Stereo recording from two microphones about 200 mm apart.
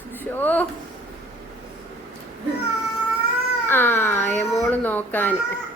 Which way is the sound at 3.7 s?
10° left (ahead or behind).